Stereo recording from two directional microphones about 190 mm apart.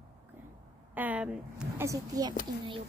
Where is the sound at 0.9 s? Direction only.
10° right (ahead or behind).